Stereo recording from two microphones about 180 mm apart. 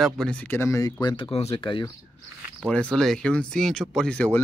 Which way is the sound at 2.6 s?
5° left (ahead or behind).